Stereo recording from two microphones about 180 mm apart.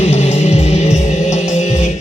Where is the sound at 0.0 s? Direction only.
35° left (ahead or behind).